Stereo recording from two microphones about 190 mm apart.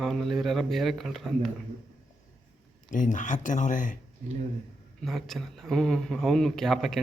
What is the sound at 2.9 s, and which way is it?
Speech, 45° left (ahead or behind).